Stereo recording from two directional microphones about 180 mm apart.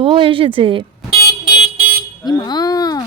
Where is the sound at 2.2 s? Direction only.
25° left (ahead or behind).